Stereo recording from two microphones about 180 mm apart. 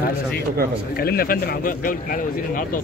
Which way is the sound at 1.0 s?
55° left (ahead or behind).